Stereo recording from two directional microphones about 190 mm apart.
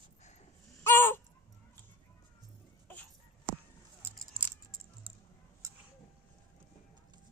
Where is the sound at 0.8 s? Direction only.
10° left (ahead or behind).